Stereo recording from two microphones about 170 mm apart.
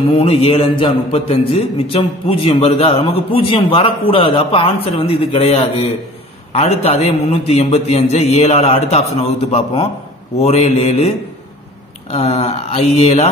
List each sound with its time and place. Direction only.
0.2 s a man's voice: 35° left (ahead or behind)